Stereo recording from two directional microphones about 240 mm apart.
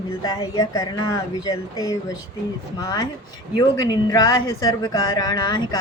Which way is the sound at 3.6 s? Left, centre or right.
Centre.